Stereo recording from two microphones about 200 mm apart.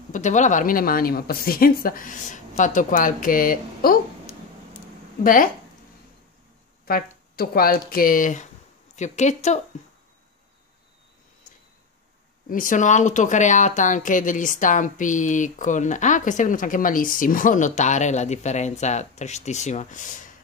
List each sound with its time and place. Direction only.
0.1 s speech: 40° left (ahead or behind)
6.9 s speech: 45° left (ahead or behind)
12.4 s speech: 40° left (ahead or behind)